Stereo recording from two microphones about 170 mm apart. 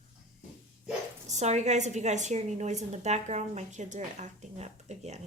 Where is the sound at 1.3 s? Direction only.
40° right (ahead or behind).